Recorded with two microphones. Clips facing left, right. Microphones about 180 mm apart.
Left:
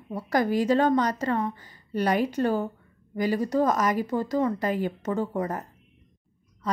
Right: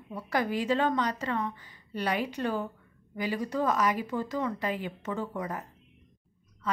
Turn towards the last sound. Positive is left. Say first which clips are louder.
# left 4 dB
turn(degrees=40)  # may be behind; listen again after turning